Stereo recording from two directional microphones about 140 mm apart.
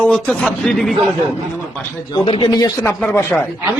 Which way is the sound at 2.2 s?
40° left (ahead or behind).